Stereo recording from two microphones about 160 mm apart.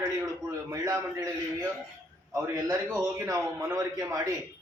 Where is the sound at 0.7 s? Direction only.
20° right (ahead or behind).